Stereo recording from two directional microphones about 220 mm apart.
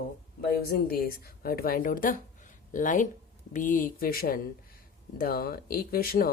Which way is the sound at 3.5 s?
35° left (ahead or behind).